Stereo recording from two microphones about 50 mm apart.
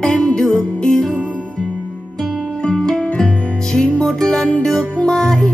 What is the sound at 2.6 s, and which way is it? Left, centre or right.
Music, centre.